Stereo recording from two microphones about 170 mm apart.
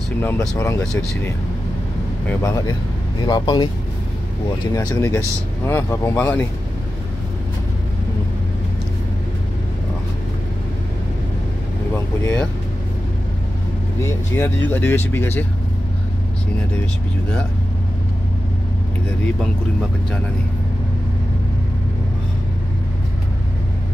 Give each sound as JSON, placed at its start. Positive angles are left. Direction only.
{"t": 0.2, "sound": "speech", "side_deg": 10}
{"t": 4.7, "sound": "speech", "side_deg": 20}
{"t": 11.9, "sound": "vehicle", "side_deg": 10}
{"t": 14.0, "sound": "speech", "side_deg": 15}